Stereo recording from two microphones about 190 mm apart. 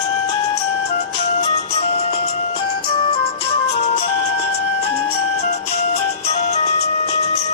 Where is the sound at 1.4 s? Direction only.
35° left (ahead or behind).